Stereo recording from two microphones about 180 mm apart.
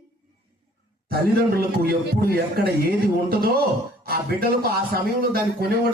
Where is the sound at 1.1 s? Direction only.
60° right (ahead or behind).